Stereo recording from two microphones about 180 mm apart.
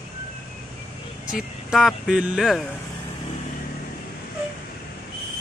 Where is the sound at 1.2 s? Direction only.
5° right (ahead or behind).